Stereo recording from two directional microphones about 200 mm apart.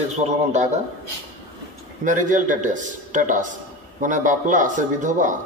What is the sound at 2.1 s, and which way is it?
A man's voice, 40° right (ahead or behind).